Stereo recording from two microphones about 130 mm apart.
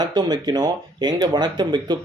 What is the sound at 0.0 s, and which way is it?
Speech, 30° right (ahead or behind).